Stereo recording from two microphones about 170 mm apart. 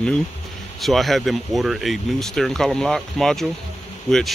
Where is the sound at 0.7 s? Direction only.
Centre (ahead or behind).